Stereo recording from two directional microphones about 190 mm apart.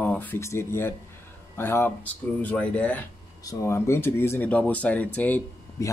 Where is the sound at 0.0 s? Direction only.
10° left (ahead or behind).